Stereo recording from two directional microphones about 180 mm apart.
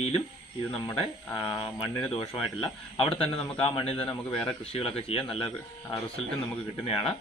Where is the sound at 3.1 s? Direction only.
30° left (ahead or behind).